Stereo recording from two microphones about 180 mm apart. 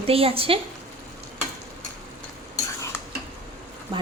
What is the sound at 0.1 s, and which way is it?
Speech, 30° right (ahead or behind).